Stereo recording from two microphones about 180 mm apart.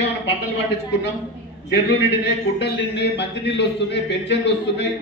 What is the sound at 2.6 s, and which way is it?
A man's voice, 75° left (ahead or behind).